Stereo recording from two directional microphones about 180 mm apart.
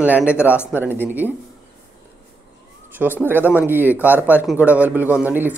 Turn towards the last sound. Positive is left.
turn(degrees=-10)  # may be behind; listen again after turning